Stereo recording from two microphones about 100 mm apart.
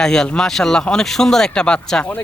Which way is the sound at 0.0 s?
5° left (ahead or behind).